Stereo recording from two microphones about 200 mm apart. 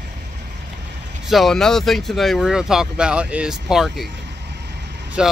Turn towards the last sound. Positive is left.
turn(degrees=-5)  # may be behind; listen again after turning